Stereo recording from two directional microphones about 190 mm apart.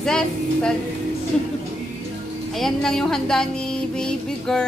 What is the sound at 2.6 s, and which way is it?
Speech, centre (ahead or behind).